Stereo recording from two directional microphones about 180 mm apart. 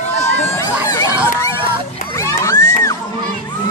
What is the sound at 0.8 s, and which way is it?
Crowd, 20° left (ahead or behind).